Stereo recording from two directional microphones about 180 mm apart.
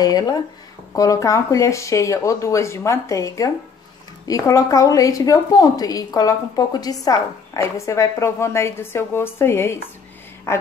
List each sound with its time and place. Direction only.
0.0 s a woman's voice: 20° left (ahead or behind)